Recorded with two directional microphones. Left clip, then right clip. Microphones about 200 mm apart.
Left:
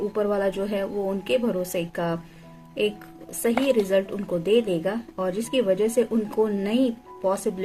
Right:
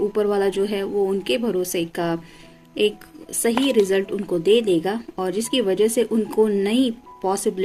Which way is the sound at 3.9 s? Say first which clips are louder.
Right 2 dB; 45° right (ahead or behind).